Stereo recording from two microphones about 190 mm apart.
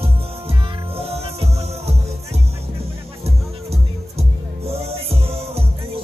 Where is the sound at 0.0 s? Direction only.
30° right (ahead or behind).